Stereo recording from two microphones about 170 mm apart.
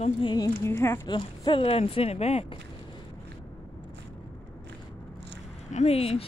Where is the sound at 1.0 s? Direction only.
25° left (ahead or behind).